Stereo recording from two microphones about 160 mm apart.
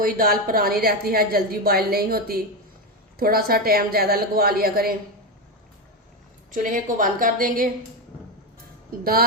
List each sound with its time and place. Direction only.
0.0 s a woman's voice: 60° right (ahead or behind)
6.5 s a woman's voice: 55° right (ahead or behind)